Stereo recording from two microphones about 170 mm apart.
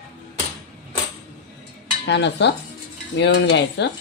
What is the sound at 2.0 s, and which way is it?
Stir, 90° left.